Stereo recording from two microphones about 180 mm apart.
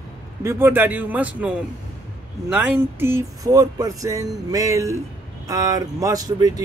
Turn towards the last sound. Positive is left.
turn(degrees=-20)  # may be behind; listen again after turning